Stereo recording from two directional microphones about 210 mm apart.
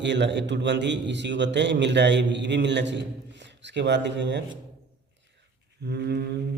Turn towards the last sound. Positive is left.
turn(degrees=-50)  # may be behind; listen again after turning